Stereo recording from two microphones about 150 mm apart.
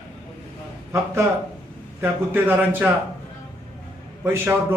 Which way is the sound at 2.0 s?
15° right (ahead or behind).